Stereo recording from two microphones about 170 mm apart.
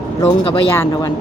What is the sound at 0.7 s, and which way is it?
Speech, 15° left (ahead or behind).